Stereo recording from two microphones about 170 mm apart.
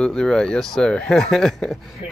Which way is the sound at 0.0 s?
5° left (ahead or behind).